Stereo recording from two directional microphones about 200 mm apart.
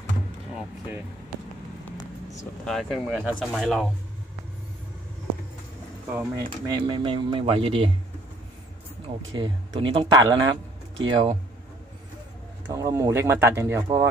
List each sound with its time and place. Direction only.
0.6 s a sound: 10° right (ahead or behind)
2.6 s speech: centre (ahead or behind)
6.1 s speech: 20° right (ahead or behind)
9.0 s speech: 25° right (ahead or behind)
12.6 s speech: 15° right (ahead or behind)